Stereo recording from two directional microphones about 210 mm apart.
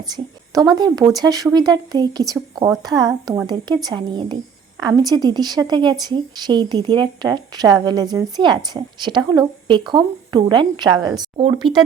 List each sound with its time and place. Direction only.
0.5 s speech: 20° right (ahead or behind)